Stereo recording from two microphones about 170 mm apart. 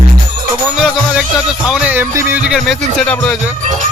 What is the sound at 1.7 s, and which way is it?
Music, 10° right (ahead or behind).